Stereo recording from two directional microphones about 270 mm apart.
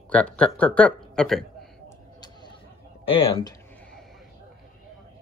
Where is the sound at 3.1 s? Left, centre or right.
Centre.